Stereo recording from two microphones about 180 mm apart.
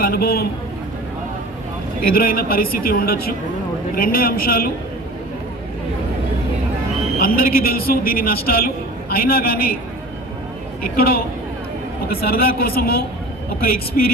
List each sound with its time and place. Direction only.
0.0 s a man's voice: 55° left (ahead or behind)
2.1 s a man's voice: 55° left (ahead or behind)
7.2 s a man's voice: 55° left (ahead or behind)
10.9 s a man's voice: 55° left (ahead or behind)